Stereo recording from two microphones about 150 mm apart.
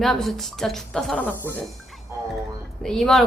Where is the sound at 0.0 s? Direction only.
Centre (ahead or behind).